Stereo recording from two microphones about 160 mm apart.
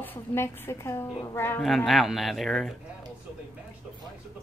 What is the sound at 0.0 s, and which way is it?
A woman's voice, 15° left (ahead or behind).